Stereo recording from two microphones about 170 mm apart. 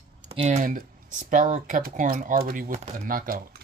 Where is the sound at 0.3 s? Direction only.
40° right (ahead or behind); by 3.3 s 55° right (ahead or behind).